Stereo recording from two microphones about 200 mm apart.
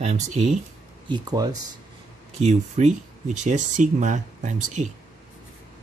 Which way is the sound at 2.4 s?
35° right (ahead or behind).